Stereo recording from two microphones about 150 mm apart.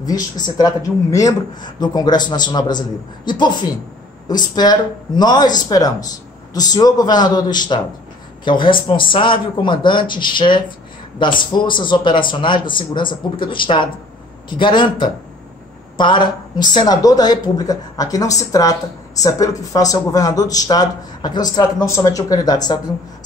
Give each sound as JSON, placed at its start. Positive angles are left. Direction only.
{"t": 0.0, "sound": "speech", "side_deg": 25}